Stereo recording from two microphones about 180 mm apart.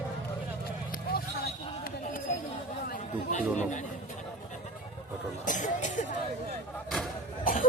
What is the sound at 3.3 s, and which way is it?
Speech, 40° left (ahead or behind).